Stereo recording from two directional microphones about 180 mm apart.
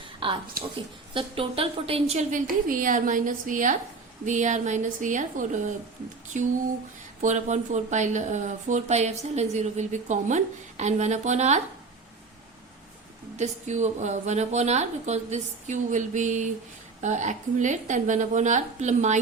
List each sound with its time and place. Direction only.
0.0 s a sound: 30° right (ahead or behind)
1.1 s a woman's voice: 30° right (ahead or behind)
13.3 s a woman's voice: 40° right (ahead or behind)